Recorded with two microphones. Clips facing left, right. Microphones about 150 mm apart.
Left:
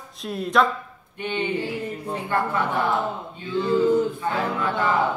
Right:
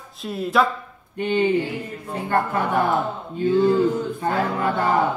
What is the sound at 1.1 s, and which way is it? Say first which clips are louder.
Speech: right 6 dB; 40° right (ahead or behind).